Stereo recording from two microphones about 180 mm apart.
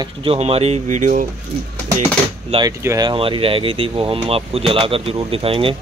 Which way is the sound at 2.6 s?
20° right (ahead or behind).